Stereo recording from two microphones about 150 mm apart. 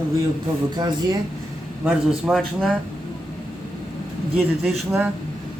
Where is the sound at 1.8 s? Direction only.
Centre (ahead or behind).